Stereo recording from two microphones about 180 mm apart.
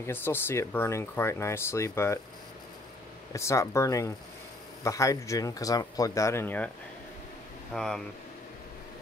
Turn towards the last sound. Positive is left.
turn(degrees=5)  # may be behind; listen again after turning